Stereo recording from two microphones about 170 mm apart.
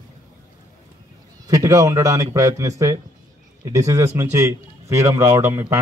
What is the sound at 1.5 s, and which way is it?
Speech, 20° right (ahead or behind).